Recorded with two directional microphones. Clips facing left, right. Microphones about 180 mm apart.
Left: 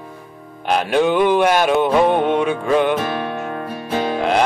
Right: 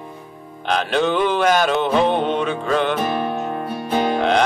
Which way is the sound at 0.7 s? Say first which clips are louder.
Left 3 dB; 10° left (ahead or behind).